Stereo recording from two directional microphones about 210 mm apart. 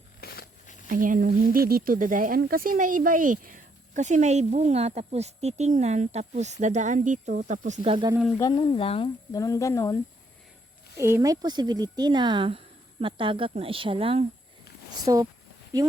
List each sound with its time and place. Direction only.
0.2 s a sound: 45° left (ahead or behind)
0.9 s speech: 40° right (ahead or behind)
7.8 s speech: 25° right (ahead or behind)
8.4 s speech: 20° left (ahead or behind)
10.9 s speech: 15° right (ahead or behind)